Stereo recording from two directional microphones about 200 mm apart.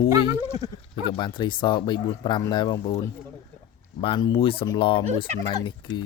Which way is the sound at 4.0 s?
20° left (ahead or behind).